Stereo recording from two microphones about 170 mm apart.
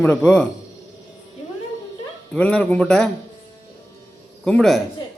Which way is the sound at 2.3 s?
5° left (ahead or behind).